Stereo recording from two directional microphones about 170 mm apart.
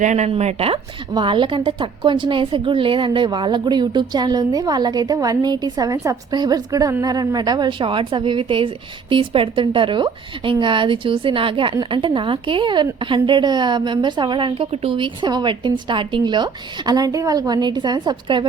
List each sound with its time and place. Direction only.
0.0 s speech: 45° right (ahead or behind); by 18.4 s 25° right (ahead or behind)